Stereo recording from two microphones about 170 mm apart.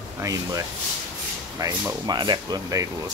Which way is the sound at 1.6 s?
20° right (ahead or behind).